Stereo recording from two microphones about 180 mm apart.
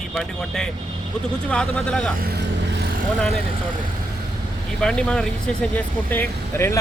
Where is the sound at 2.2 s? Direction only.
65° right (ahead or behind).